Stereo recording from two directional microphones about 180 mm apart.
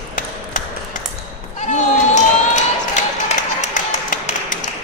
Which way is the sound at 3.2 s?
40° left (ahead or behind).